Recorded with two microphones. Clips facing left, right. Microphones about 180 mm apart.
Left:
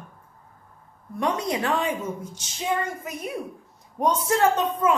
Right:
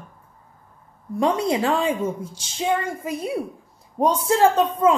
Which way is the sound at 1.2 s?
30° right (ahead or behind).